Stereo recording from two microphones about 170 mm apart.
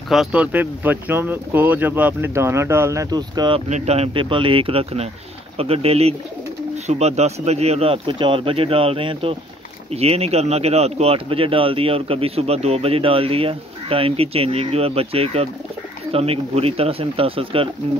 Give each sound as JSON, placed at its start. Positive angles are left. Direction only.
{"t": 0.1, "sound": "speech", "side_deg": -5}
{"t": 3.6, "sound": "speech", "side_deg": -40}